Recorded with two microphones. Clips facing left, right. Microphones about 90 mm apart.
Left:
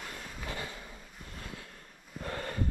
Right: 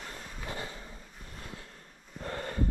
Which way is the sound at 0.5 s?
30° right (ahead or behind).